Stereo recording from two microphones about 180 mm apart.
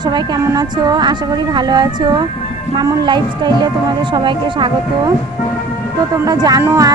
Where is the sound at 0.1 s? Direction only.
20° right (ahead or behind).